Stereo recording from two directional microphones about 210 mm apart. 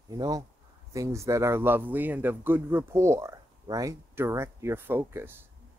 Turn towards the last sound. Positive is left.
turn(degrees=-10)  # may be behind; listen again after turning